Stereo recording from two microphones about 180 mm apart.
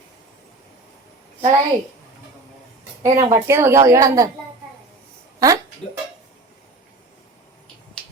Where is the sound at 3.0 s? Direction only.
15° right (ahead or behind).